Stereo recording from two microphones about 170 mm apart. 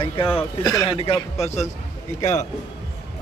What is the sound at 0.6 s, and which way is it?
Speech, 20° left (ahead or behind).